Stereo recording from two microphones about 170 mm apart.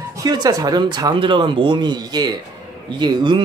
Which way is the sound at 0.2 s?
20° right (ahead or behind).